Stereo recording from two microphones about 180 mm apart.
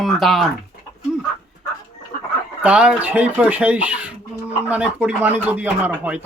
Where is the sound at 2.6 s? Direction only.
5° right (ahead or behind).